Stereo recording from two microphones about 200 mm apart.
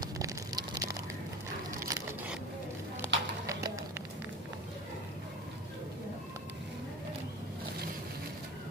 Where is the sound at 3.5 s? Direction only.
15° right (ahead or behind).